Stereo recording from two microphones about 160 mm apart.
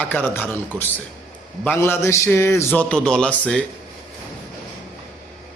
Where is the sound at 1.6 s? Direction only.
15° left (ahead or behind).